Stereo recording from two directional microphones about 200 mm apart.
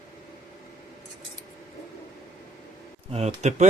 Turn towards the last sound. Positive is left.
turn(degrees=-35)  # may be behind; listen again after turning